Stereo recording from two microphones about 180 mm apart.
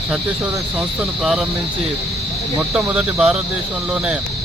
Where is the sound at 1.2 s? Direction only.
Centre (ahead or behind).